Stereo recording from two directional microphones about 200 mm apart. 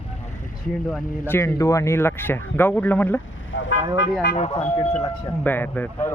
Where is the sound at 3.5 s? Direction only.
70° left (ahead or behind).